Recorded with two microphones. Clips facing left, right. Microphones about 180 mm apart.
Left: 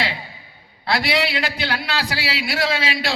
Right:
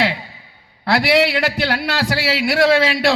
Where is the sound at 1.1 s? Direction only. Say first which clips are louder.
Right 6 dB; 55° right (ahead or behind).